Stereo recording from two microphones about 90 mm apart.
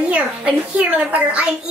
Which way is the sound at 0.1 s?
15° right (ahead or behind).